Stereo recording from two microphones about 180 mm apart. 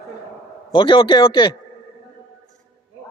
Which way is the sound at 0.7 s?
25° left (ahead or behind).